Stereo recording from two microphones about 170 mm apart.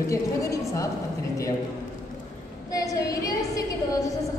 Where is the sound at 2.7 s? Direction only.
20° left (ahead or behind).